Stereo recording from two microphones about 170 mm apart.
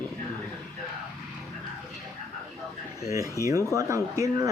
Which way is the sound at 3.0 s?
20° right (ahead or behind).